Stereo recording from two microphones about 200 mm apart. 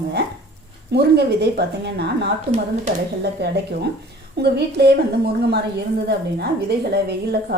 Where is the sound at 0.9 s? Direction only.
55° right (ahead or behind).